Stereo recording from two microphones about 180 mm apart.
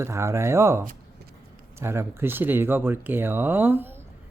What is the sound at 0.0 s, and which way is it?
A child's voice, 15° right (ahead or behind).